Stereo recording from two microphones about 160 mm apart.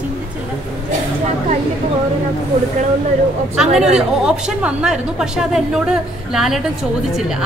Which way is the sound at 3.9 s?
5° right (ahead or behind).